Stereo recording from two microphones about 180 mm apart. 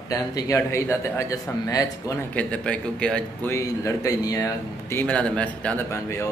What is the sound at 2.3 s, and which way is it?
Speech, 5° left (ahead or behind).